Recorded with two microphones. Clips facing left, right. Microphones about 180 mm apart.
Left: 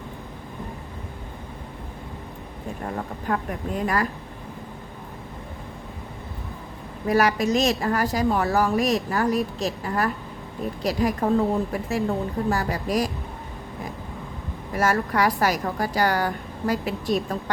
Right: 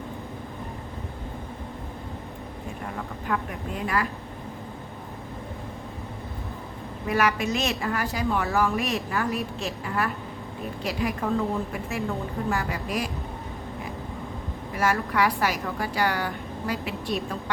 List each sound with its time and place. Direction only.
2.8 s a woman's voice: 35° left (ahead or behind)
7.1 s a woman's voice: 35° left (ahead or behind)
14.8 s a woman's voice: 40° left (ahead or behind)